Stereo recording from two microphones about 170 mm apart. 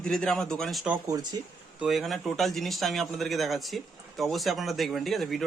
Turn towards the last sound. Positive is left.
turn(degrees=0)  # may be behind; listen again after turning